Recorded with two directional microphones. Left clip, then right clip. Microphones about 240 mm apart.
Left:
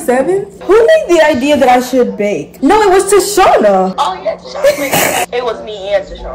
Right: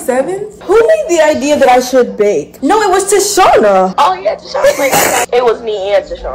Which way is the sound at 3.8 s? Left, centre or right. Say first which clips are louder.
Right 4 dB; right.